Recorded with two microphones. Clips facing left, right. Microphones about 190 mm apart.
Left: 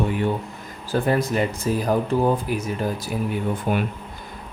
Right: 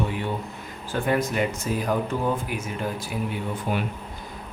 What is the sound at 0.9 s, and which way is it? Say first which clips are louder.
Speech: left 3 dB; 35° left (ahead or behind).